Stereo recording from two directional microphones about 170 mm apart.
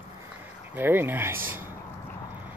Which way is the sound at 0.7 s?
10° right (ahead or behind).